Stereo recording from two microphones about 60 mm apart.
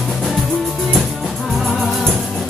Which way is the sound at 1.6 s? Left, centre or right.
Centre.